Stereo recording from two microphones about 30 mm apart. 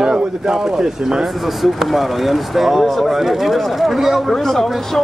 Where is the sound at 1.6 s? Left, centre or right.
Centre.